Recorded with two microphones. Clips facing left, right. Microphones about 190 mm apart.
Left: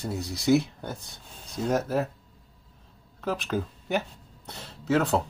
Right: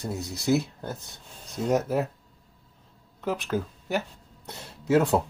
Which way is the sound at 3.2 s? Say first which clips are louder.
Right 1 dB; 5° right (ahead or behind).